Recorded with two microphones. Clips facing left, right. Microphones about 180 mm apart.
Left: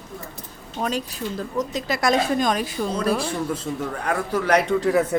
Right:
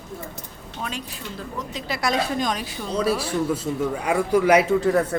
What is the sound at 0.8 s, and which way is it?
A woman's voice, 40° left (ahead or behind).